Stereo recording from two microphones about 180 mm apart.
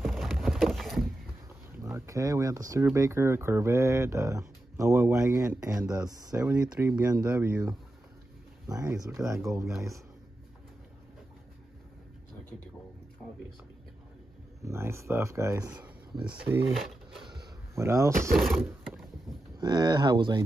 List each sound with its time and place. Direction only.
0.0 s a sound: centre (ahead or behind)
1.8 s speech: 15° right (ahead or behind)
6.4 s speech: 10° right (ahead or behind)
8.9 s speech: 15° right (ahead or behind)
14.6 s speech: 15° right (ahead or behind)
17.3 s a sound: 20° right (ahead or behind)
18.3 s speech: centre (ahead or behind)
19.6 s speech: 25° right (ahead or behind)